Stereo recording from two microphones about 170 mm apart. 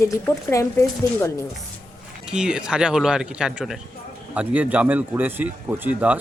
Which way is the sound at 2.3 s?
5° right (ahead or behind).